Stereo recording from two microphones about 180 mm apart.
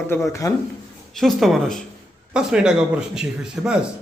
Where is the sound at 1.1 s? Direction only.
Centre (ahead or behind).